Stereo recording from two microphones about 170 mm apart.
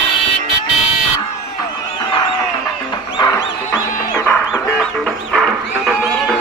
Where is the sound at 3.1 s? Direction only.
25° left (ahead or behind).